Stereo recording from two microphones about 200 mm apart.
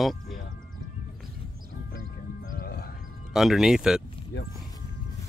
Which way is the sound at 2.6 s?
50° left (ahead or behind).